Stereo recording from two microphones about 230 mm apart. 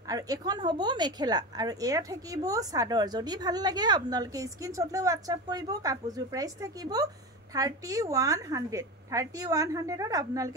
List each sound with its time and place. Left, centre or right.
0.1 s a woman's voice: centre